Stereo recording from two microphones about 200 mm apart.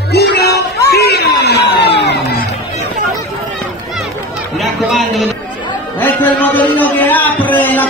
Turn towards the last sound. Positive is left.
turn(degrees=10)  # may be behind; listen again after turning